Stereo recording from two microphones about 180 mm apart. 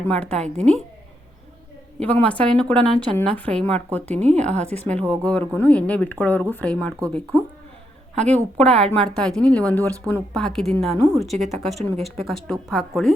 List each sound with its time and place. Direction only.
0.1 s a woman's voice: 5° left (ahead or behind)
2.0 s a woman's voice: 5° left (ahead or behind)
8.1 s a woman's voice: 40° right (ahead or behind)
8.4 s a woman's voice: 5° left (ahead or behind)